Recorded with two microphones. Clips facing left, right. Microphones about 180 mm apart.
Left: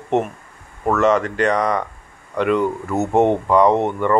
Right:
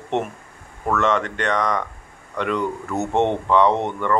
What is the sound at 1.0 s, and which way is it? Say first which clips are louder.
Speech: left 6 dB; 35° left (ahead or behind).